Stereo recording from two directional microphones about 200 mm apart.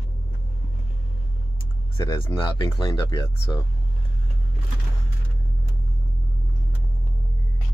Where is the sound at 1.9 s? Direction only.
25° left (ahead or behind).